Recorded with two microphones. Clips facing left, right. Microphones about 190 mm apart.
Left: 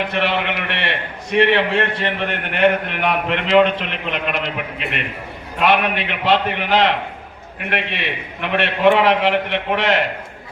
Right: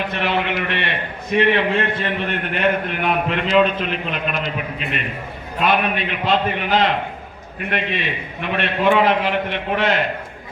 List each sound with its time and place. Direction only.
0.1 s a man's voice: 75° left (ahead or behind)